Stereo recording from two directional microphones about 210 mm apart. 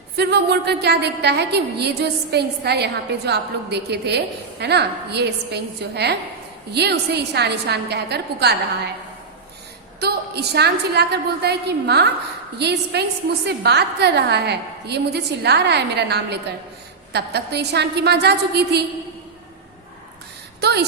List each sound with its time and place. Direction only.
0.2 s a woman's voice: 55° right (ahead or behind)
10.0 s a woman's voice: 50° right (ahead or behind)
20.6 s speech: 50° right (ahead or behind)